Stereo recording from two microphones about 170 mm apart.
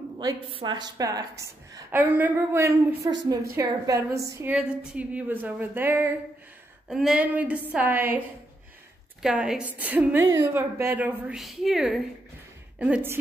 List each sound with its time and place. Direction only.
0.2 s a woman's voice: 25° right (ahead or behind)
3.1 s a woman's voice: 25° right (ahead or behind)
6.9 s a woman's voice: 5° right (ahead or behind)
9.2 s a woman's voice: 5° right (ahead or behind)